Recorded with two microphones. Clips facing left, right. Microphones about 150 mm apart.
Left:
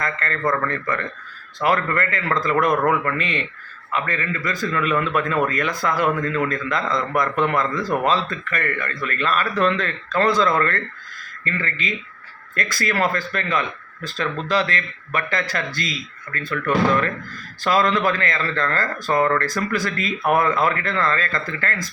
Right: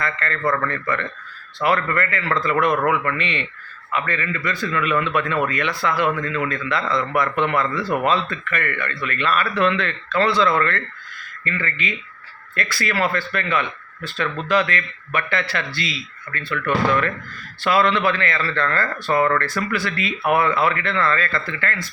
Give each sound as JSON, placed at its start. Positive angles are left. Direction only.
{"t": 0.0, "sound": "a man's voice", "side_deg": 40}